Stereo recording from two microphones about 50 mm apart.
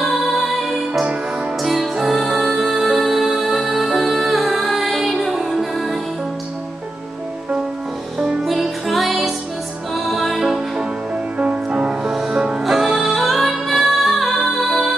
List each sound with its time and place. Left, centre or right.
0.0 s music: centre
8.5 s music: centre
11.3 s music: right
12.1 s music: centre
12.4 s music: centre
12.6 s music: centre